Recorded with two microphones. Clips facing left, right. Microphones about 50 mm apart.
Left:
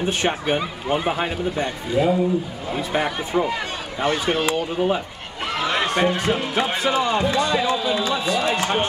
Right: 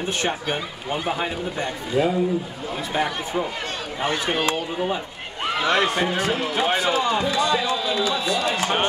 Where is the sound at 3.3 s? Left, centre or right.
Left.